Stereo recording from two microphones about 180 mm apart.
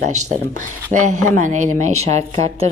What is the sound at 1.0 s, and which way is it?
Speech, 45° right (ahead or behind).